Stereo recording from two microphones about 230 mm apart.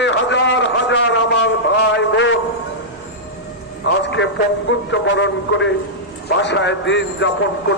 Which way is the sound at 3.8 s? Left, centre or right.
Left.